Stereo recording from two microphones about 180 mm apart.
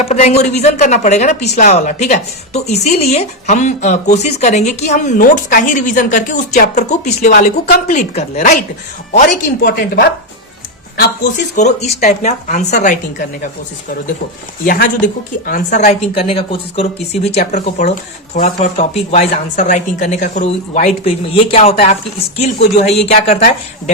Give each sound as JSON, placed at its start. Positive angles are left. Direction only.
{"t": 0.0, "sound": "speech", "side_deg": 35}
{"t": 9.6, "sound": "a woman's voice", "side_deg": 55}
{"t": 10.9, "sound": "speech", "side_deg": 45}
{"t": 14.6, "sound": "speech", "side_deg": 50}
{"t": 16.1, "sound": "speech", "side_deg": 30}